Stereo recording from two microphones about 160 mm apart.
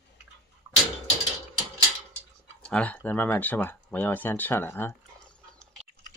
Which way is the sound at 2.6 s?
5° left (ahead or behind).